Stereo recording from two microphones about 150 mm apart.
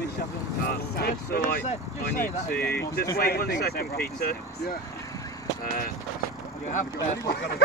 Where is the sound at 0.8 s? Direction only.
90° left.